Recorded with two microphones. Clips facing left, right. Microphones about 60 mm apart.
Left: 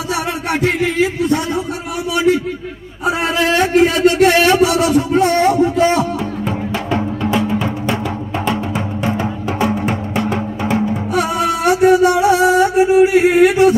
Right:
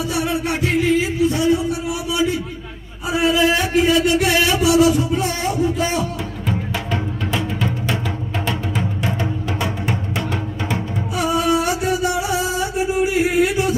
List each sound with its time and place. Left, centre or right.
0.1 s music: left
2.1 s a sound: left
6.4 s music: centre
11.1 s music: left